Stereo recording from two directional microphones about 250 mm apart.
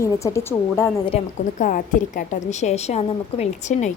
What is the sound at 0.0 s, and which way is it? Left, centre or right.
A woman's voice, centre.